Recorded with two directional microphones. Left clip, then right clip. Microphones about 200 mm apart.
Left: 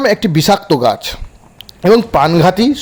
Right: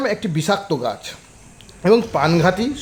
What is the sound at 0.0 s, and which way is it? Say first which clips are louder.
A man's voice: left 9 dB; 30° left (ahead or behind).